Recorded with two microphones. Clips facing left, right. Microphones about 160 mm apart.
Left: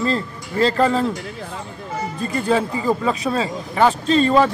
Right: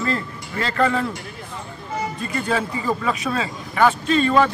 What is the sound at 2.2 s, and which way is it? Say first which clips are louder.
Speech: left 6 dB; 30° left (ahead or behind).